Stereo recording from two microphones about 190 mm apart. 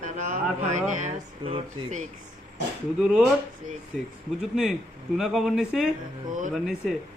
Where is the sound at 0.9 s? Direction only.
35° right (ahead or behind).